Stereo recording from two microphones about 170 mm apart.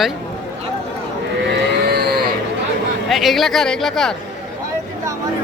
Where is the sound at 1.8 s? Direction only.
70° right (ahead or behind).